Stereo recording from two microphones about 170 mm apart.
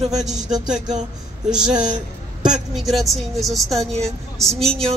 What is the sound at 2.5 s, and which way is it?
A woman's voice, centre (ahead or behind).